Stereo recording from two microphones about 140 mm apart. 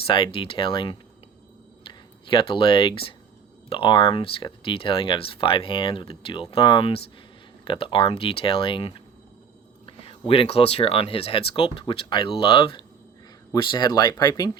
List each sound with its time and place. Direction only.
0.1 s speech: 40° left (ahead or behind)